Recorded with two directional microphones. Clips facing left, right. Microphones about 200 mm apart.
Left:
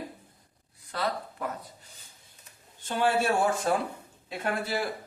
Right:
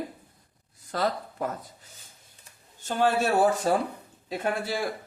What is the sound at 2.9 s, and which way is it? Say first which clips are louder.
Speech: right 2 dB; 40° right (ahead or behind).